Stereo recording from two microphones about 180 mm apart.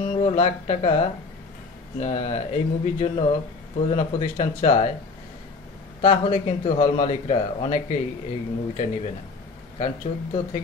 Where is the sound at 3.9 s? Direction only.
40° left (ahead or behind).